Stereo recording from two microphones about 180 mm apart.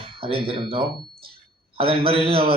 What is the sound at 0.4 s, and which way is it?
A man's voice, 30° right (ahead or behind).